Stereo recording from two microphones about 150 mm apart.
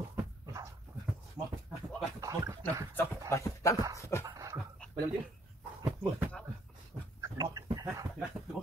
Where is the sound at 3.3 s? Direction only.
20° left (ahead or behind).